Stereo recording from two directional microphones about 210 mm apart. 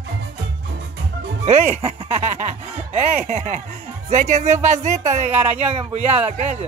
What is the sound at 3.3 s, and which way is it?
Speech, 30° right (ahead or behind).